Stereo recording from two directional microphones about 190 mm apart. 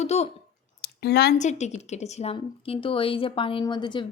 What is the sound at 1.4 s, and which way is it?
A woman's voice, 35° left (ahead or behind).